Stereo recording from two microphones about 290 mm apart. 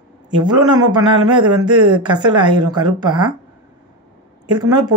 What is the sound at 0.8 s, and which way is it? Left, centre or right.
Speech, right.